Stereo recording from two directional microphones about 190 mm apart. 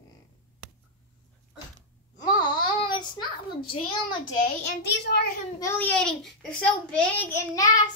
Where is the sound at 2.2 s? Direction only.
25° left (ahead or behind).